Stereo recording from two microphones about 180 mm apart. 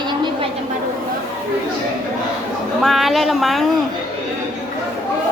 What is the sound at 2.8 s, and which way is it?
Speech, centre (ahead or behind).